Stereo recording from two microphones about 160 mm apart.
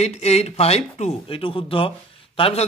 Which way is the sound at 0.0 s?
40° left (ahead or behind).